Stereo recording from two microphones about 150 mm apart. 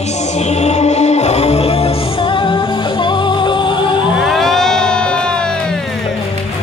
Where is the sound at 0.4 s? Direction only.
50° left (ahead or behind).